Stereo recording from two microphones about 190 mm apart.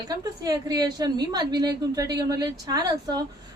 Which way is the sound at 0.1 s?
20° right (ahead or behind).